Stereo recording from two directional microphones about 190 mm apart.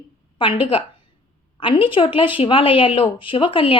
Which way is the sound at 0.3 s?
25° left (ahead or behind).